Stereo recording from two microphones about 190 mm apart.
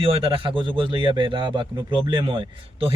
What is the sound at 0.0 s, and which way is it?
Speech, 30° right (ahead or behind).